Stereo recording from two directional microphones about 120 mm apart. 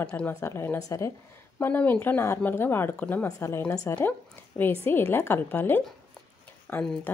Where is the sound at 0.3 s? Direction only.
20° left (ahead or behind).